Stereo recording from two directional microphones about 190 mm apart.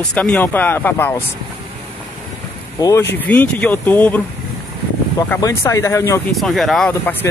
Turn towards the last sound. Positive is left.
turn(degrees=5)  # may be behind; listen again after turning